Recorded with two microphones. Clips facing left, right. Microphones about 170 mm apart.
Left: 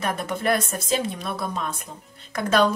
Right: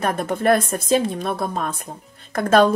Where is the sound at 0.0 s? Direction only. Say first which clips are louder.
Right 5 dB; 50° right (ahead or behind).